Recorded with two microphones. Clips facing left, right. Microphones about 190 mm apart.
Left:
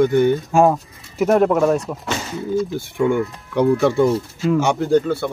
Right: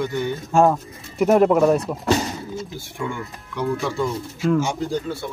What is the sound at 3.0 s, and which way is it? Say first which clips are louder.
Speech: left 11 dB; 55° left (ahead or behind).